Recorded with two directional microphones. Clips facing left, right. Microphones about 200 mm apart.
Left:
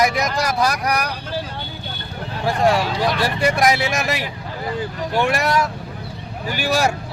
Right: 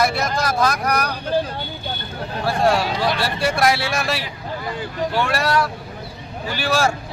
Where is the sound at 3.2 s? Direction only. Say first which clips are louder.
Left 2 dB; 15° left (ahead or behind).